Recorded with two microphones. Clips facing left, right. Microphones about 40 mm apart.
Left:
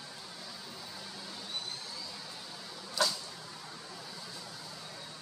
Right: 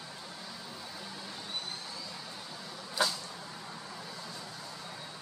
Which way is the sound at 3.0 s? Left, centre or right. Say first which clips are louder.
Right 1 dB; centre.